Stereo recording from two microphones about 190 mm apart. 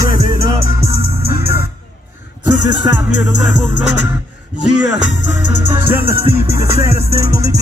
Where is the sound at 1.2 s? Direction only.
55° left (ahead or behind).